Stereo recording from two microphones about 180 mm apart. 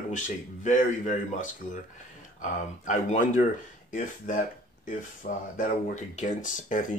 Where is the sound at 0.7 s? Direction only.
45° left (ahead or behind).